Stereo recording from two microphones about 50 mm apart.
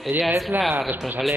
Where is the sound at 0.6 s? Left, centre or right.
Centre.